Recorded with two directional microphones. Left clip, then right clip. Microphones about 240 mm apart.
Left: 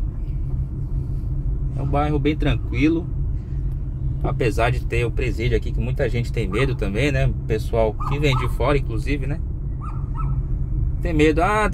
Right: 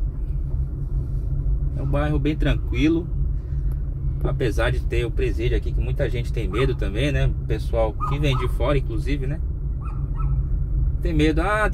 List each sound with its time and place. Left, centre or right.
2.0 s speech: centre
4.4 s speech: centre
11.0 s speech: centre